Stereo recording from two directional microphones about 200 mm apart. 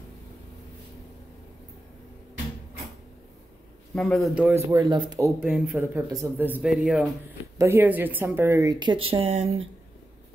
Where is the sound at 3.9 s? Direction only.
Centre (ahead or behind); by 5.3 s 20° right (ahead or behind).